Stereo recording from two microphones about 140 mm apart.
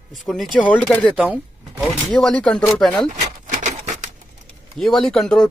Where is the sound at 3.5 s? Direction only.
60° right (ahead or behind).